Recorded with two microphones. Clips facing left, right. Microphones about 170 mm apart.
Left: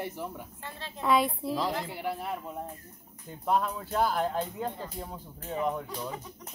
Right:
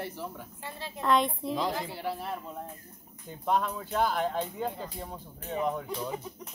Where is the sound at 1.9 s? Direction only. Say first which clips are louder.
Left 1 dB; 15° left (ahead or behind).